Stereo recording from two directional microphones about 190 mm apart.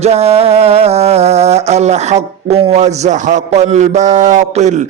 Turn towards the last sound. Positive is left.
turn(degrees=-40)  # may be behind; listen again after turning